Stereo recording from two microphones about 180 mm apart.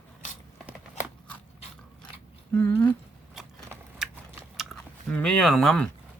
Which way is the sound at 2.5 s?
10° left (ahead or behind).